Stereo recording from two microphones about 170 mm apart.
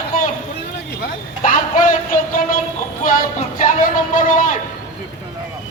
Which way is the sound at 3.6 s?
50° left (ahead or behind).